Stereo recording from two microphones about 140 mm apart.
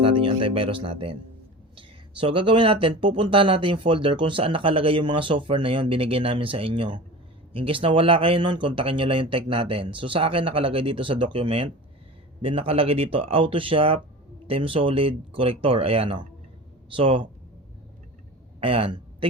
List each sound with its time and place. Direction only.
0.0 s music: 40° right (ahead or behind)
1.7 s speech: 40° right (ahead or behind)
18.6 s a man's voice: 40° right (ahead or behind)